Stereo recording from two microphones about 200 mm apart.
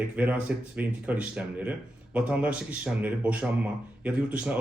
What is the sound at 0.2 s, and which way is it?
Speech, 5° right (ahead or behind).